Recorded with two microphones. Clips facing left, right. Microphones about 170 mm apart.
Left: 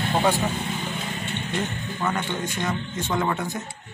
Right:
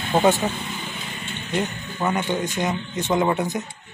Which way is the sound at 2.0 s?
20° right (ahead or behind).